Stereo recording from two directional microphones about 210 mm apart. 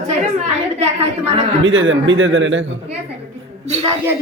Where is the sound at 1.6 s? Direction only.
65° right (ahead or behind).